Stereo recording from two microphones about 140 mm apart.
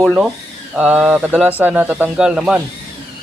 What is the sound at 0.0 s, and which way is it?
Speech, 5° right (ahead or behind).